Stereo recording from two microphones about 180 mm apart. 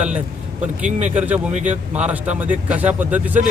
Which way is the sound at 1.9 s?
10° right (ahead or behind).